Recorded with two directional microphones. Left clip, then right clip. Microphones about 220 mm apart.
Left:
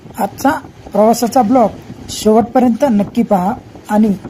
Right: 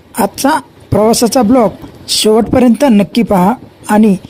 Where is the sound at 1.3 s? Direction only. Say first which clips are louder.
Right 1 dB; 50° right (ahead or behind).